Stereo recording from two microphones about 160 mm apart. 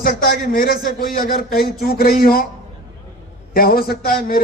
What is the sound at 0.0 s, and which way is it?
A man's voice, 60° left (ahead or behind).